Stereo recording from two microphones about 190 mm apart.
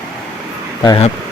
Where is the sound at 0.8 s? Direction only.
20° left (ahead or behind).